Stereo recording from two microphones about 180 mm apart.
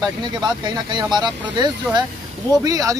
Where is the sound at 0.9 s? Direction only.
25° right (ahead or behind).